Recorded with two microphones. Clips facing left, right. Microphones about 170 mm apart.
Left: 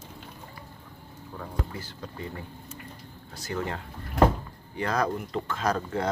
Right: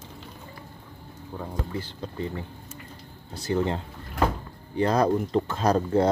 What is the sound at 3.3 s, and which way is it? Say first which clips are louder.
Speech: right 7 dB; 30° right (ahead or behind).